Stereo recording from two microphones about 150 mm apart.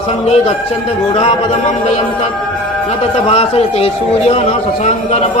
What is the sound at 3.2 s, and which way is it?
A man's voice, 45° left (ahead or behind).